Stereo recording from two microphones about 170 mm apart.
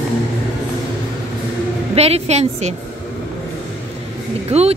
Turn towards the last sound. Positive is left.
turn(degrees=-35)  # may be behind; listen again after turning